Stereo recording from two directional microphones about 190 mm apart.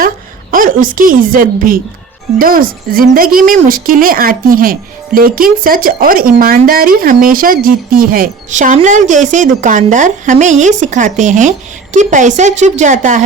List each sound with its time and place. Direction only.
0.5 s a woman's voice: 45° right (ahead or behind)